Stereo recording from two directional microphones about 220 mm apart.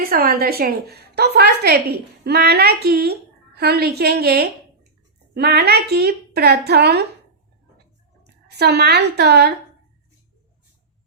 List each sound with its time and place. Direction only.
0.0 s a woman's voice: 40° right (ahead or behind)
8.2 s speech: 50° right (ahead or behind)